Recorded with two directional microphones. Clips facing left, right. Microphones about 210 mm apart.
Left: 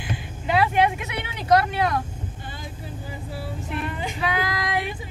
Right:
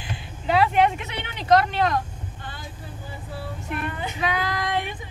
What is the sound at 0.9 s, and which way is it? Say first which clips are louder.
Speech: left 1 dB; 10° left (ahead or behind).